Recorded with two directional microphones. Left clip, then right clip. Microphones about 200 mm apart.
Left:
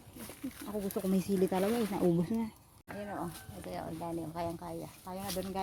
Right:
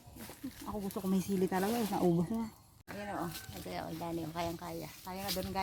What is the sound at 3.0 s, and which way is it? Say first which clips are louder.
Music: right 1 dB; 20° right (ahead or behind).